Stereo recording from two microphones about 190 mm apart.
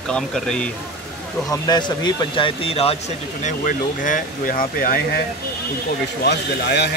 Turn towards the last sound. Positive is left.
turn(degrees=60)  # may be behind; listen again after turning